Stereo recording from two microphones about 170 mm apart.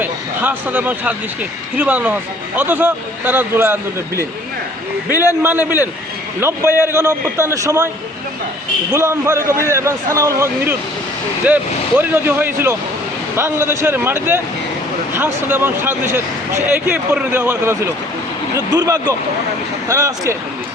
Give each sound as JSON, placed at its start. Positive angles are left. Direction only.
{"t": 0.0, "sound": "a sound", "side_deg": -10}
{"t": 1.8, "sound": "speech", "side_deg": -10}
{"t": 5.1, "sound": "a man's voice", "side_deg": 20}
{"t": 5.4, "sound": "speech", "side_deg": -10}
{"t": 8.9, "sound": "speech", "side_deg": -15}
{"t": 18.5, "sound": "speech", "side_deg": -20}